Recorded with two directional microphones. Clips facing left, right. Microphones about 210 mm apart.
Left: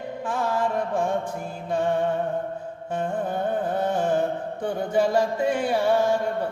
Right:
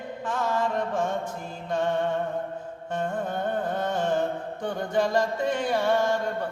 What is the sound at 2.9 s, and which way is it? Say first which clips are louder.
Music: left 2 dB; 10° left (ahead or behind).